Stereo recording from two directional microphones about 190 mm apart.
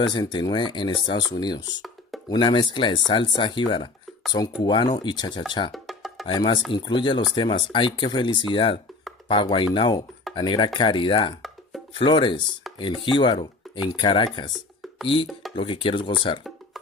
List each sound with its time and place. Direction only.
0.0 s speech: 25° left (ahead or behind)
5.7 s music: centre (ahead or behind)
6.2 s speech: 25° left (ahead or behind)
15.5 s speech: 25° left (ahead or behind)